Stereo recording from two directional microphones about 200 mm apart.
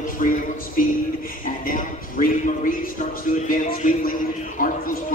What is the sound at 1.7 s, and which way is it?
A man's voice, 45° left (ahead or behind).